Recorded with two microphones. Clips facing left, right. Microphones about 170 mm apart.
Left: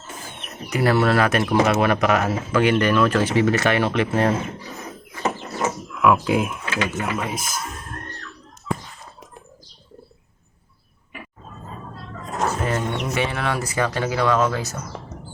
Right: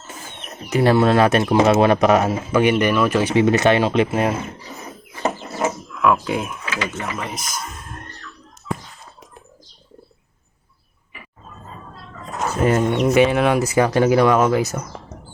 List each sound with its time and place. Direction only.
0.7 s speech: 25° right (ahead or behind)
5.9 s speech: 5° left (ahead or behind)
12.6 s speech: 15° right (ahead or behind)